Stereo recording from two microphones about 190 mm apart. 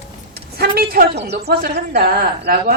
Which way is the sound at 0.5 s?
50° right (ahead or behind).